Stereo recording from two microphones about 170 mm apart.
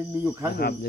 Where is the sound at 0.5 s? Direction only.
65° left (ahead or behind).